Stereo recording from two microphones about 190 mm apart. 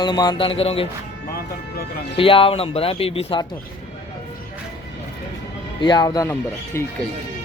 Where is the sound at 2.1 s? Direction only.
30° left (ahead or behind).